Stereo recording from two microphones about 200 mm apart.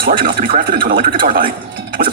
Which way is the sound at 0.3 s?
45° right (ahead or behind).